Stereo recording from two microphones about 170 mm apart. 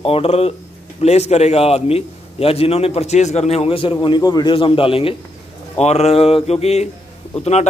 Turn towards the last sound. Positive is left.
turn(degrees=40)  # may be behind; listen again after turning